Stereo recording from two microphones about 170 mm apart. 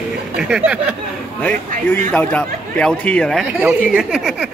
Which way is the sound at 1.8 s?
10° left (ahead or behind).